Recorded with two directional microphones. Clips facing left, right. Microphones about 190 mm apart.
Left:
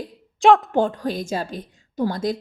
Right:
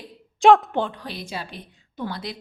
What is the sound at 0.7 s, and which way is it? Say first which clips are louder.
A woman's voice: left 6 dB; 45° left (ahead or behind).